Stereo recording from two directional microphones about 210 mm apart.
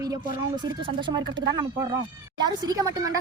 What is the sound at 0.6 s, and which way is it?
Speech, 20° right (ahead or behind).